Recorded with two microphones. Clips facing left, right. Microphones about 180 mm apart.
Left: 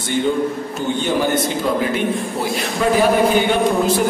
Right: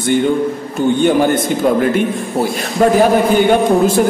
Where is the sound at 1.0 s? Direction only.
50° right (ahead or behind).